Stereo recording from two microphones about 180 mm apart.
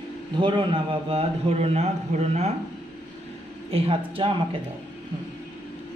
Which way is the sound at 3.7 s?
30° right (ahead or behind).